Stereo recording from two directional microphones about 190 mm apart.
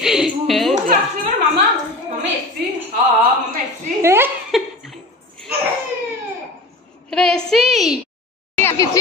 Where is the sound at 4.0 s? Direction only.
10° right (ahead or behind).